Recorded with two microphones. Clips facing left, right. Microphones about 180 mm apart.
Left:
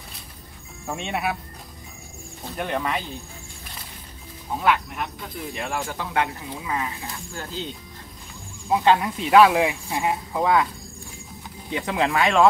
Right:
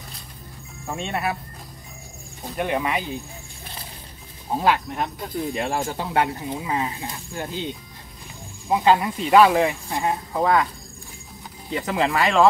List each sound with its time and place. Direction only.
0.8 s speech: 5° left (ahead or behind)
2.5 s speech: 5° right (ahead or behind)
4.6 s speech: 35° right (ahead or behind); by 7.5 s 20° right (ahead or behind)
8.6 s speech: 5° right (ahead or behind)
11.7 s speech: centre (ahead or behind)